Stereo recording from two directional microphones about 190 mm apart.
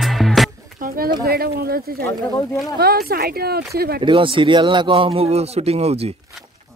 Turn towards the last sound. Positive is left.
turn(degrees=-35)  # may be behind; listen again after turning